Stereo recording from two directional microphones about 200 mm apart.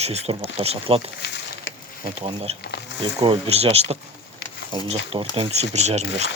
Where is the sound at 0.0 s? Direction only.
30° right (ahead or behind).